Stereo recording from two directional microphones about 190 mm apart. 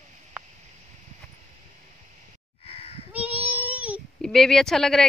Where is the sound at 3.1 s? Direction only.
10° right (ahead or behind).